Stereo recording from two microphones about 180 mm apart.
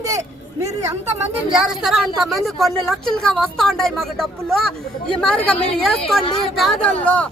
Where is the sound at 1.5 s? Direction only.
5° right (ahead or behind).